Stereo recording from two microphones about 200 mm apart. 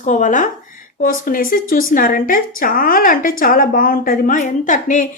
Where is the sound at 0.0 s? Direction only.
40° left (ahead or behind).